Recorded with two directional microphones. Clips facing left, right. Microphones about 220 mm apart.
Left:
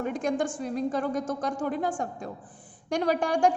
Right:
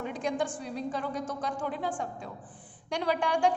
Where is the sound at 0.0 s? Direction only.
45° left (ahead or behind).